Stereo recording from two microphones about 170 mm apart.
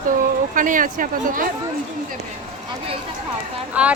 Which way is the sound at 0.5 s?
50° right (ahead or behind).